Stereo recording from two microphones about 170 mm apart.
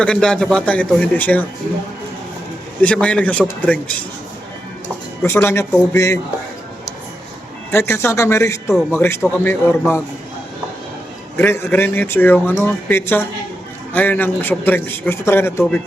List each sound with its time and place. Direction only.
0.0 s a man's voice: 5° left (ahead or behind)
2.8 s a man's voice: 5° left (ahead or behind)
5.2 s a man's voice: 15° left (ahead or behind)
7.7 s a man's voice: 15° left (ahead or behind)
11.3 s a man's voice: 15° left (ahead or behind)